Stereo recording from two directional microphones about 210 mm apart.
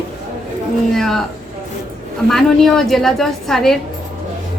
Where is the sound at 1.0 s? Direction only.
Centre (ahead or behind).